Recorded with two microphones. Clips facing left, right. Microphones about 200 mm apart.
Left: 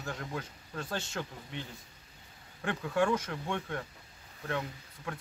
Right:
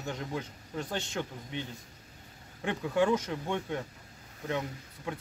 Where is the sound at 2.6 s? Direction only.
15° right (ahead or behind).